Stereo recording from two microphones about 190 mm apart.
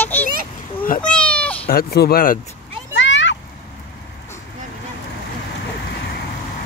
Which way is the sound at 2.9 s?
75° left (ahead or behind).